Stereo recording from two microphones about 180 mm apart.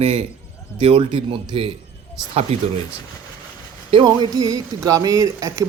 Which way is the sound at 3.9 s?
25° right (ahead or behind).